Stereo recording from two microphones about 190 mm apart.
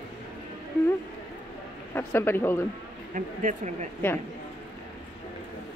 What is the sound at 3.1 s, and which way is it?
Speech, 40° right (ahead or behind).